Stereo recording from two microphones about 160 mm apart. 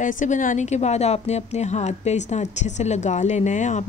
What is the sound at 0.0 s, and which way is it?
A woman's voice, 55° left (ahead or behind).